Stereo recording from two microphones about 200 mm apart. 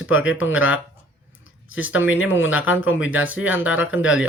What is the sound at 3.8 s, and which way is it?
Speech, 75° left (ahead or behind).